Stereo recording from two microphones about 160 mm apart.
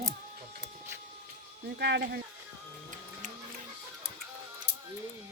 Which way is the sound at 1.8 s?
90° right.